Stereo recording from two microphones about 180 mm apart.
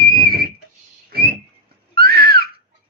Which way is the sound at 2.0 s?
55° right (ahead or behind).